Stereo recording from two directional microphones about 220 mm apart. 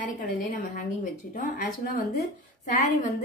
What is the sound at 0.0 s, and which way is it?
Speech, 35° left (ahead or behind).